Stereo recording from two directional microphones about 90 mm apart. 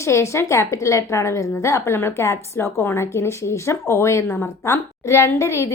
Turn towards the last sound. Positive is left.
turn(degrees=30)  # may be behind; listen again after turning